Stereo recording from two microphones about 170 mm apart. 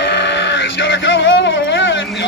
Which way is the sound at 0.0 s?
90° left.